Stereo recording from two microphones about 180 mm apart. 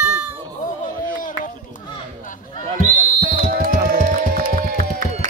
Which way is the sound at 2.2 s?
45° left (ahead or behind).